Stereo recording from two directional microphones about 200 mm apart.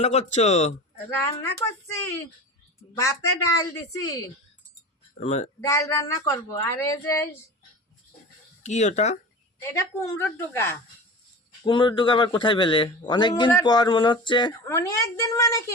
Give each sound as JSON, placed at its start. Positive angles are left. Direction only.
{"t": 0.0, "sound": "speech", "side_deg": 35}
{"t": 1.1, "sound": "speech", "side_deg": 10}
{"t": 3.0, "sound": "speech", "side_deg": 15}
{"t": 5.1, "sound": "speech", "side_deg": 35}
{"t": 5.5, "sound": "speech", "side_deg": 15}
{"t": 8.6, "sound": "speech", "side_deg": 35}
{"t": 10.0, "sound": "speech", "side_deg": 10}
{"t": 11.6, "sound": "a man's voice", "side_deg": 25}